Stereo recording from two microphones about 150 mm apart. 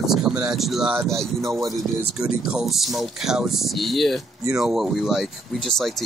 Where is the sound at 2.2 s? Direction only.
5° right (ahead or behind).